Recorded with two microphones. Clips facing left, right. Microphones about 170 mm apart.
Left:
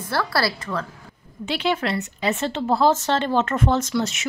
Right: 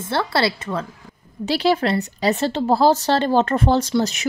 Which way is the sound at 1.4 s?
35° right (ahead or behind).